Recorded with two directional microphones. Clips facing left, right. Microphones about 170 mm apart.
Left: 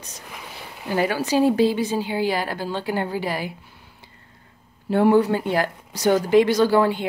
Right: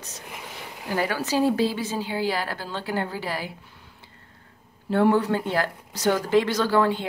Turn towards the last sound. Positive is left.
turn(degrees=15)  # may be behind; listen again after turning